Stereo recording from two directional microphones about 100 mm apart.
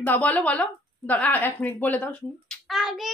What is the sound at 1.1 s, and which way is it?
Speech, 15° left (ahead or behind).